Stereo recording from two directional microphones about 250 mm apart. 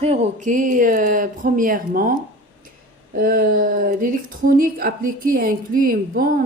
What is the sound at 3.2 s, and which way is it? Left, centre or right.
A woman's voice, right.